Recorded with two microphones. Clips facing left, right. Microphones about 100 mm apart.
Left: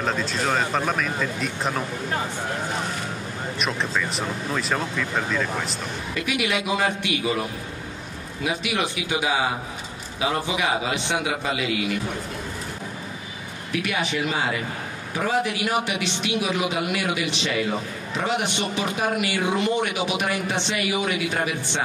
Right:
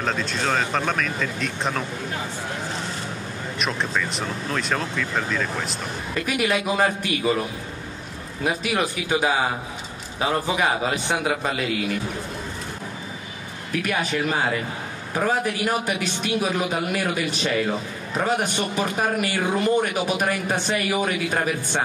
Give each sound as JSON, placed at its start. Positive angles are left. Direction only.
{"t": 0.0, "sound": "speech", "side_deg": 0}
{"t": 3.5, "sound": "speech", "side_deg": 0}
{"t": 6.1, "sound": "a man's voice", "side_deg": -40}
{"t": 8.5, "sound": "a man's voice", "side_deg": -40}
{"t": 13.8, "sound": "a man's voice", "side_deg": -45}